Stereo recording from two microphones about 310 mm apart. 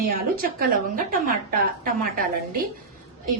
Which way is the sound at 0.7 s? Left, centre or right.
Right.